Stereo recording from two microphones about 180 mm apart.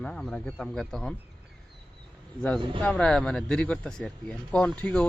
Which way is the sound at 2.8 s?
5° left (ahead or behind).